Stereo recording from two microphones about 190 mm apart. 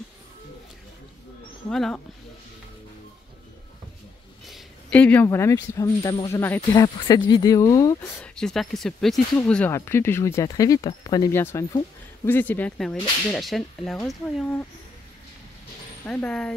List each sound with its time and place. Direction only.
1.7 s speech: centre (ahead or behind)
4.5 s speech: 5° left (ahead or behind)
8.4 s speech: centre (ahead or behind)
16.1 s speech: 5° left (ahead or behind)